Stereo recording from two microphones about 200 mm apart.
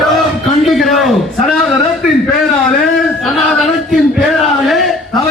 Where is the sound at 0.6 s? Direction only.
Centre (ahead or behind).